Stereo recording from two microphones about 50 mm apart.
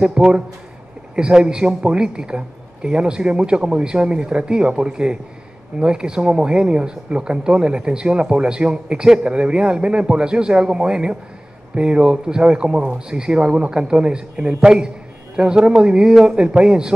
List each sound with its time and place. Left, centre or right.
0.0 s a man's voice: centre